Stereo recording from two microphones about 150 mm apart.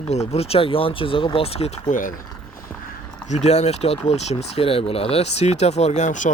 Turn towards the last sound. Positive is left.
turn(degrees=55)  # may be behind; listen again after turning